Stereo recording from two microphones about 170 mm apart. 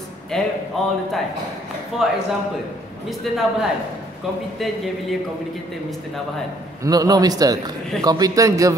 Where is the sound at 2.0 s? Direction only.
Centre (ahead or behind).